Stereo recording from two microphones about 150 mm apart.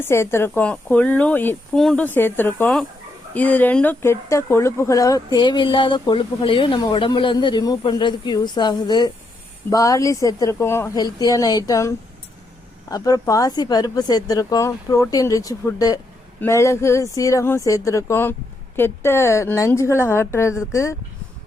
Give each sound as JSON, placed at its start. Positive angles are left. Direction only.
{"t": 0.0, "sound": "a woman's voice", "side_deg": 15}